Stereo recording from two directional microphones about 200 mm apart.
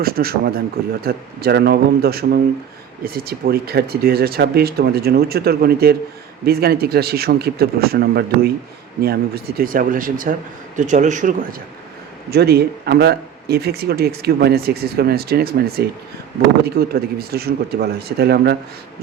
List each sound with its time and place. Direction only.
0.0 s a man's voice: 50° right (ahead or behind)
12.3 s speech: 55° right (ahead or behind)